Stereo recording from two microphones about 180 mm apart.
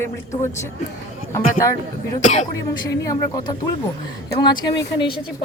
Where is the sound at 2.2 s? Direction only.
40° left (ahead or behind).